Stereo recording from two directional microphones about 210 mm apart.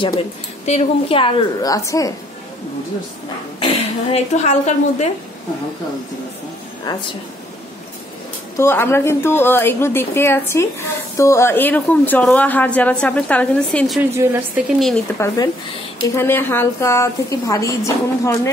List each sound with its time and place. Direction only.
0.7 s a woman's voice: 30° left (ahead or behind)
3.5 s a woman's voice: 25° left (ahead or behind)
6.9 s a woman's voice: 20° left (ahead or behind)
8.5 s a woman's voice: 10° left (ahead or behind)
14.1 s a woman's voice: 10° right (ahead or behind)
15.1 s a woman's voice: 15° left (ahead or behind)